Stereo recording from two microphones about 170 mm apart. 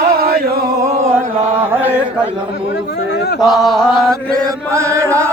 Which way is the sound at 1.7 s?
10° right (ahead or behind).